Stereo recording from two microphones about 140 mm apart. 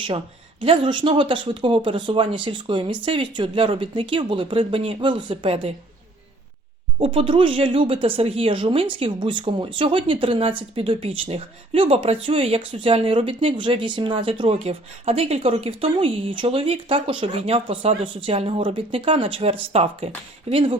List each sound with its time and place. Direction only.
0.6 s speech: 35° right (ahead or behind)
7.0 s speech: 40° right (ahead or behind)